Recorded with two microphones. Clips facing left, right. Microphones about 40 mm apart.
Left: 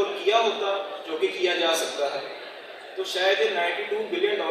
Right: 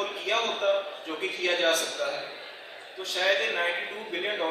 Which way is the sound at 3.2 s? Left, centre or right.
Left.